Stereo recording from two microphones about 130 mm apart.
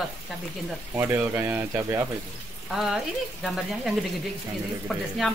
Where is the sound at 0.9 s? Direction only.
15° right (ahead or behind).